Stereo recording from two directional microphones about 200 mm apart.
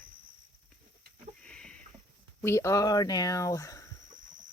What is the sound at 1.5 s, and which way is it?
Rowboat, 5° left (ahead or behind).